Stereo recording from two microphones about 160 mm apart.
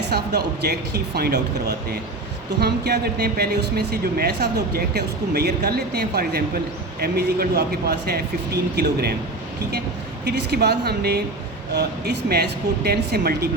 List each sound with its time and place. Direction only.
0.0 s speech: 90° right
10.2 s speech: 90° right